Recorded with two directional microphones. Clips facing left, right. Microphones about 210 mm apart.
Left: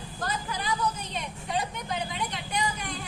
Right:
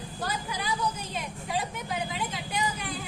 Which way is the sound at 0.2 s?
10° right (ahead or behind).